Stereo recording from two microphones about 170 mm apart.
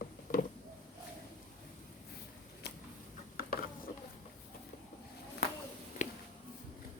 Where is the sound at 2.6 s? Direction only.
75° left (ahead or behind).